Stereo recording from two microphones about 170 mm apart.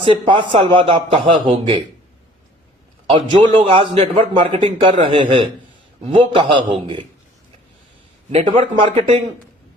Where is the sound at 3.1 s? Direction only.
30° right (ahead or behind).